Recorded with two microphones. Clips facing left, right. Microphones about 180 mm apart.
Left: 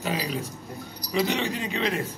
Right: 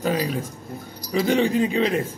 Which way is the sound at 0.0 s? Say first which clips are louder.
Right 5 dB; 50° right (ahead or behind).